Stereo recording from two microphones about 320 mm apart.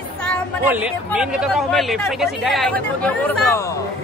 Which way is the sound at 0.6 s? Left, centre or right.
Centre.